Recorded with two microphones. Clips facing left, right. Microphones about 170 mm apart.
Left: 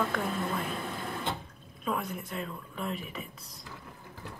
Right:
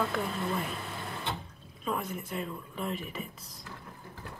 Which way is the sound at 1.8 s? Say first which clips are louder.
Left 1 dB; centre (ahead or behind).